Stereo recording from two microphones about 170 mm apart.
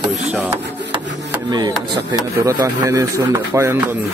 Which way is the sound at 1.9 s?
25° right (ahead or behind).